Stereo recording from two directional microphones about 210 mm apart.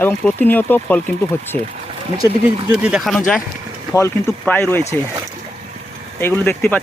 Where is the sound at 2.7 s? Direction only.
5° right (ahead or behind).